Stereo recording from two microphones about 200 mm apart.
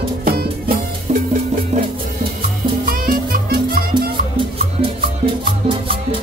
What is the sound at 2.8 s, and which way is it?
Music, 45° right (ahead or behind).